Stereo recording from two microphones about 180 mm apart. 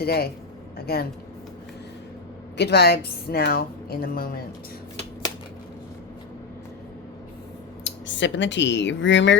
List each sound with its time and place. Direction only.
0.0 s a woman's voice: 60° left (ahead or behind)
2.6 s a woman's voice: 65° left (ahead or behind)
7.9 s speech: 90° left